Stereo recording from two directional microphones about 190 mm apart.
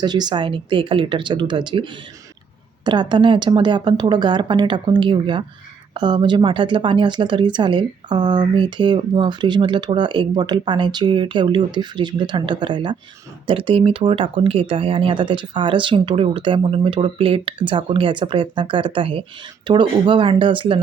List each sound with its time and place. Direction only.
0.0 s speech: 20° right (ahead or behind)